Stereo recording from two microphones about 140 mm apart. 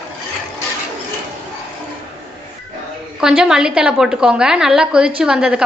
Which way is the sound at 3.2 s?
5° right (ahead or behind).